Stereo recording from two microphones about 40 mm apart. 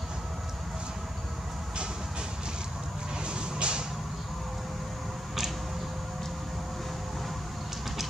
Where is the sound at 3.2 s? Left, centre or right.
Right.